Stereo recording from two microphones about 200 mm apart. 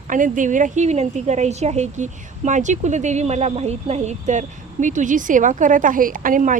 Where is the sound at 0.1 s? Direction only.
40° right (ahead or behind).